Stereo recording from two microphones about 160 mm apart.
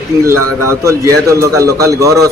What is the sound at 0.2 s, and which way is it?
A man's voice, 20° right (ahead or behind).